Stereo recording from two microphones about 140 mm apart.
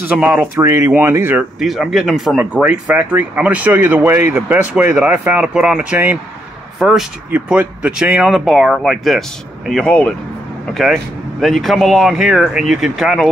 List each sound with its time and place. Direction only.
0.0 s speech: 10° right (ahead or behind)
0.6 s speech: 20° right (ahead or behind)
1.6 s speech: centre (ahead or behind)